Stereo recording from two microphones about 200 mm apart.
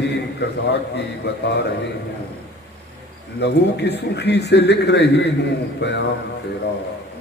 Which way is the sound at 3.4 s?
55° left (ahead or behind).